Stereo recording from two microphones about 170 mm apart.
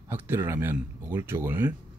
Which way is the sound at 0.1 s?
15° right (ahead or behind).